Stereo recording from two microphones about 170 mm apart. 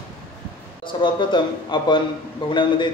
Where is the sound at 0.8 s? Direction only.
30° left (ahead or behind).